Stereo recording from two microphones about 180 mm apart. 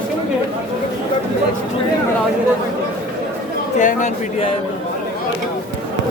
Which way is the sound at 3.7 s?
45° left (ahead or behind).